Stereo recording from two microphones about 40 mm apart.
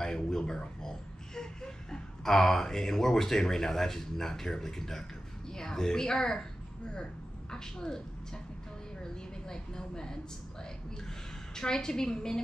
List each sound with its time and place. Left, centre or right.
0.0 s a woman's voice: centre
7.5 s a woman's voice: centre
9.0 s a woman's voice: centre
11.5 s a woman's voice: centre